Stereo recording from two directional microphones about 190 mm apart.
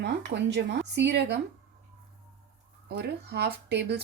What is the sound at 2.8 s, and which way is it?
Speech, 60° right (ahead or behind).